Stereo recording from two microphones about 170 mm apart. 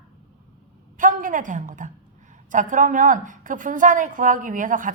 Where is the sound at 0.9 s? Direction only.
50° right (ahead or behind).